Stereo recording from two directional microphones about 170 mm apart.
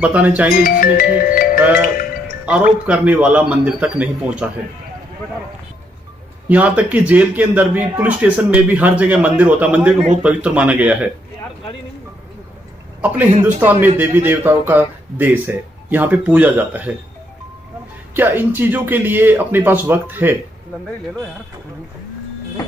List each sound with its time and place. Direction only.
0.0 s a man's voice: 10° right (ahead or behind)
0.7 s music: 55° left (ahead or behind)
2.4 s a man's voice: 5° right (ahead or behind)
6.5 s a man's voice: 10° right (ahead or behind)
13.0 s a man's voice: 10° right (ahead or behind)
18.1 s a man's voice: 10° right (ahead or behind)